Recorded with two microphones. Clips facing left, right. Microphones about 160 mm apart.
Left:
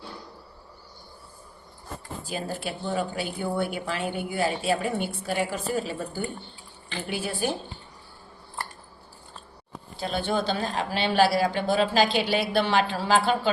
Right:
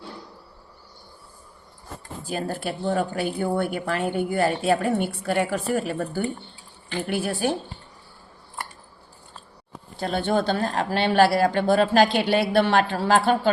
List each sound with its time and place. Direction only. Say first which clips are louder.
2.2 s speech: right 4 dB; 55° right (ahead or behind)
10.0 s speech: right 4 dB; 60° right (ahead or behind)